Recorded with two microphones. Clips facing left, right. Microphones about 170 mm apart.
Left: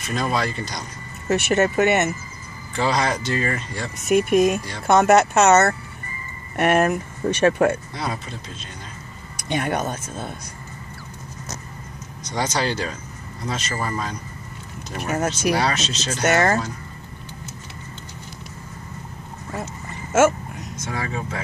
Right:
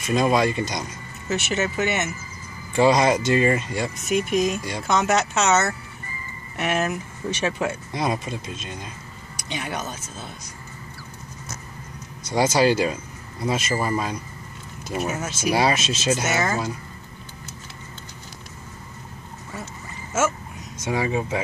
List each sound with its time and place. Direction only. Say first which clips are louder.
0.1 s speech: right 4 dB; 15° right (ahead or behind)
1.3 s speech: left 6 dB; 55° left (ahead or behind)
2.7 s speech: right 5 dB; 15° right (ahead or behind)
4.1 s speech: left 6 dB; 55° left (ahead or behind)
7.9 s speech: right 4 dB; 15° right (ahead or behind)
9.4 s speech: left 7 dB; 55° left (ahead or behind)
12.2 s speech: right 5 dB; 10° right (ahead or behind)
15.0 s speech: left 10 dB; 65° left (ahead or behind)
15.5 s speech: right 2 dB; 10° right (ahead or behind)
16.3 s speech: left 5 dB; 60° left (ahead or behind)
20.1 s a sound: left 7 dB; 60° left (ahead or behind)
20.8 s speech: right 5 dB; 15° right (ahead or behind)